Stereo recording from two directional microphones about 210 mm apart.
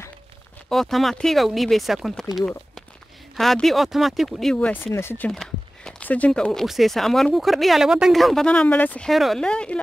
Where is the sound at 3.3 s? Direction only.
Centre (ahead or behind).